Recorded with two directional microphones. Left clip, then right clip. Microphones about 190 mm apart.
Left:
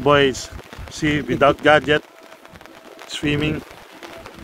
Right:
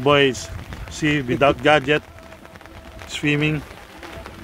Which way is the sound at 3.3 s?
Centre (ahead or behind).